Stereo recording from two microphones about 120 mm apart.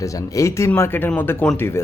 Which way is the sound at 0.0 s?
25° left (ahead or behind).